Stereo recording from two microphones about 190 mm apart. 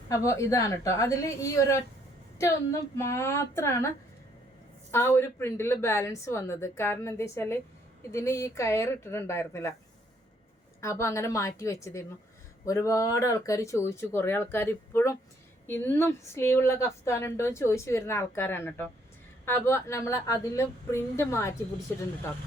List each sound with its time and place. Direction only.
0.1 s a woman's voice: 15° left (ahead or behind)
2.9 s a woman's voice: 15° left (ahead or behind)
10.8 s a woman's voice: 15° left (ahead or behind)